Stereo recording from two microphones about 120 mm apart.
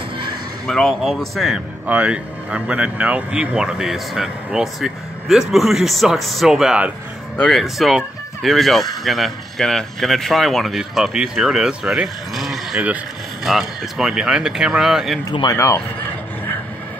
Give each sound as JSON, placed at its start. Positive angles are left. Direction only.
{"t": 0.7, "sound": "speech", "side_deg": 0}
{"t": 15.5, "sound": "speech", "side_deg": 25}